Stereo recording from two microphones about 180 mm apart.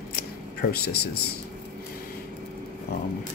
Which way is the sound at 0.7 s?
65° left (ahead or behind).